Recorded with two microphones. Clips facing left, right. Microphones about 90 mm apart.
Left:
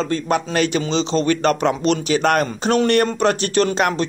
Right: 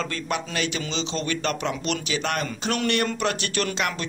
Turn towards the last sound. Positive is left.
turn(degrees=35)  # may be behind; listen again after turning